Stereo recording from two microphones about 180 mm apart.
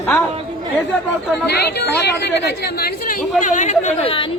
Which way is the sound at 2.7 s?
55° left (ahead or behind).